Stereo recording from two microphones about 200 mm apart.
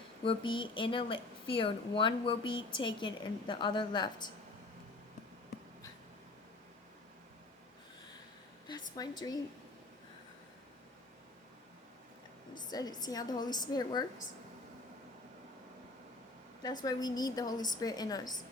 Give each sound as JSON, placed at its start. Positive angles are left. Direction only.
{"t": 0.3, "sound": "a woman's voice", "side_deg": 25}
{"t": 9.0, "sound": "a woman's voice", "side_deg": 20}
{"t": 12.7, "sound": "a woman's voice", "side_deg": 20}
{"t": 16.8, "sound": "a woman's voice", "side_deg": 20}